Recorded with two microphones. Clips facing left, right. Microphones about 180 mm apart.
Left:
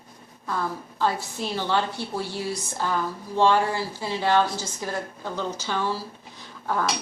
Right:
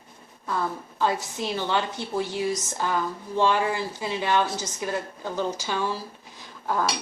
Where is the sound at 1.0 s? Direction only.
20° right (ahead or behind).